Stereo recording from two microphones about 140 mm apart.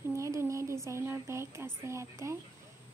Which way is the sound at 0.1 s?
20° right (ahead or behind).